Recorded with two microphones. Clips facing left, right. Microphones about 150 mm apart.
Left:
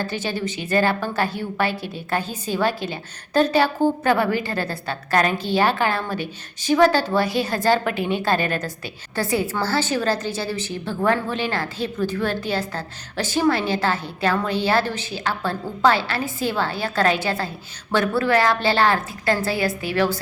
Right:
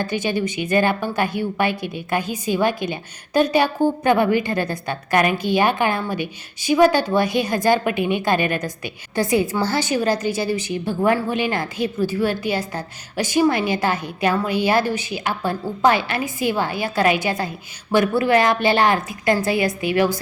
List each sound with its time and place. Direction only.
0.0 s a woman's voice: 15° right (ahead or behind)